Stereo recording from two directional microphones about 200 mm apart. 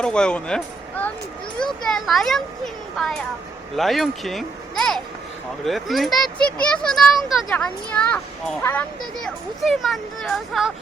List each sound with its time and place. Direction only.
0.0 s speech: 5° left (ahead or behind)
3.8 s speech: centre (ahead or behind)